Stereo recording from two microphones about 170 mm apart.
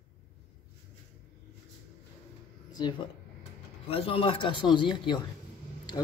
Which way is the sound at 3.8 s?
35° left (ahead or behind).